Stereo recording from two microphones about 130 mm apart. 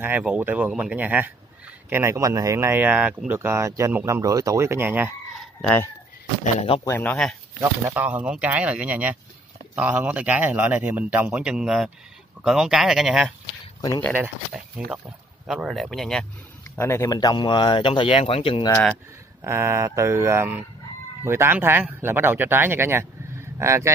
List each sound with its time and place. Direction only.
0.0 s speech: 10° right (ahead or behind)
3.3 s speech: 20° right (ahead or behind)
5.4 s chicken: 5° left (ahead or behind)
6.8 s speech: 15° left (ahead or behind)
7.9 s speech: 10° right (ahead or behind)
13.7 s speech: 35° left (ahead or behind)
14.5 s speech: 5° right (ahead or behind)
16.7 s speech: 20° left (ahead or behind); by 18.7 s 45° left (ahead or behind)
19.4 s speech: 20° right (ahead or behind)